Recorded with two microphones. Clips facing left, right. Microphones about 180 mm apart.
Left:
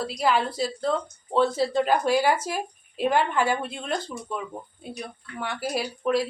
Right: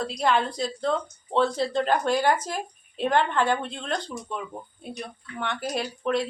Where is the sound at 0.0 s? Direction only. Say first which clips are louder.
Even; 5° left (ahead or behind).